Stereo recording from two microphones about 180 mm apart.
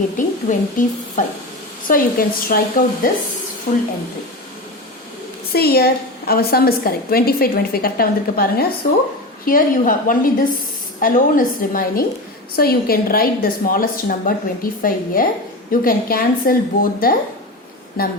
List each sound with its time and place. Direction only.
0.2 s a woman's voice: 45° left (ahead or behind)
5.5 s a woman's voice: 60° left (ahead or behind)